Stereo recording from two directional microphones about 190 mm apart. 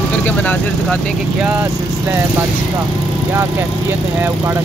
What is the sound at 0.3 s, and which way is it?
Speech, 10° left (ahead or behind).